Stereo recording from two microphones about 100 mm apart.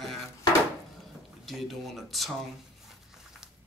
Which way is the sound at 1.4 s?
Centre (ahead or behind).